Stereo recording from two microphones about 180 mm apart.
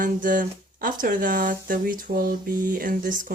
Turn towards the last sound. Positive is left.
turn(degrees=-50)  # may be behind; listen again after turning